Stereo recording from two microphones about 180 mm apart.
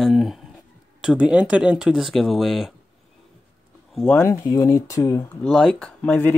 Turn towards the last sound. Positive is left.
turn(degrees=10)  # may be behind; listen again after turning